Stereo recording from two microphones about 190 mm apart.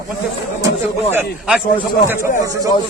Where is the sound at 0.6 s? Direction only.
10° right (ahead or behind).